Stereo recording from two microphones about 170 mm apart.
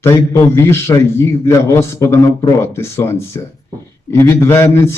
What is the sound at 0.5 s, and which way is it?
A man's voice, 15° left (ahead or behind).